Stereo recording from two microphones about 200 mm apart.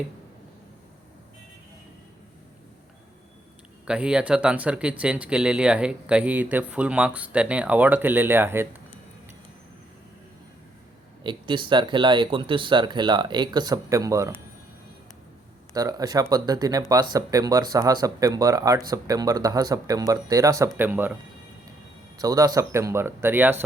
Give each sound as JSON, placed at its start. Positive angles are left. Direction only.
{"t": 3.8, "sound": "speech", "side_deg": -5}
{"t": 11.2, "sound": "speech", "side_deg": -25}
{"t": 15.7, "sound": "speech", "side_deg": -20}
{"t": 22.2, "sound": "speech", "side_deg": -20}